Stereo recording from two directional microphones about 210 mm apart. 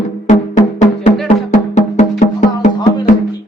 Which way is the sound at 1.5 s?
35° left (ahead or behind).